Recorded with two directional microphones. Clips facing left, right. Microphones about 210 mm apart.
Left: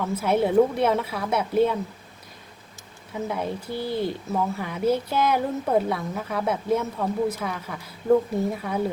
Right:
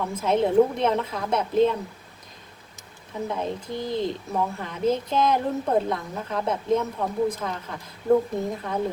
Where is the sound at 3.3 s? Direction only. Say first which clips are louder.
Even; 5° left (ahead or behind).